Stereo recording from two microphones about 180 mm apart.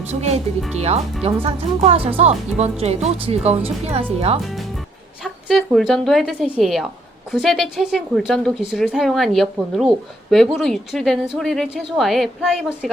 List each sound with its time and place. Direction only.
0.1 s speech: 35° right (ahead or behind)
4.4 s a woman's voice: centre (ahead or behind)